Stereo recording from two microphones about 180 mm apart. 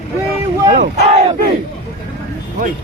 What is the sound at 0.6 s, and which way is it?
Battle cry, 40° right (ahead or behind).